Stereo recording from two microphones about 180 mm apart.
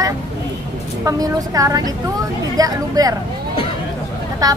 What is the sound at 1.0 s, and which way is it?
A woman's voice, 20° right (ahead or behind).